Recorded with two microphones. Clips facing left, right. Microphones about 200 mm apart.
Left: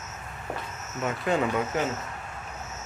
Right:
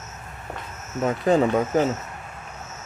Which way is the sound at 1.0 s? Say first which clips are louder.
Right 7 dB; 35° right (ahead or behind).